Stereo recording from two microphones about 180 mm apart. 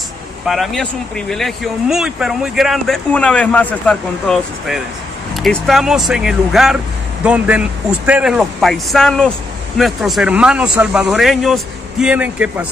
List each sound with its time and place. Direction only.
0.5 s speech: centre (ahead or behind)